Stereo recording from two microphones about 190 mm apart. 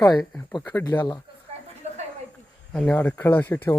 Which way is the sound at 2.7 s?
5° left (ahead or behind).